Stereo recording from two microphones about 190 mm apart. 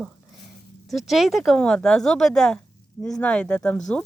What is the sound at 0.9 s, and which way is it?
Speech, centre (ahead or behind).